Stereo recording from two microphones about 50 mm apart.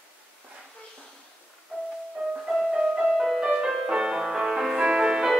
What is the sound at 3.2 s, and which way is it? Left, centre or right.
Music, centre.